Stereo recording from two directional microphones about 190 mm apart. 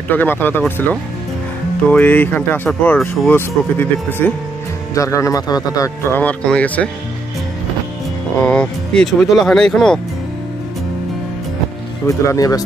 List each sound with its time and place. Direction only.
0.1 s speech: 10° left (ahead or behind)
1.9 s speech: 10° left (ahead or behind)
6.2 s speech: 5° left (ahead or behind)
8.4 s speech: 5° left (ahead or behind)
12.3 s speech: 20° left (ahead or behind)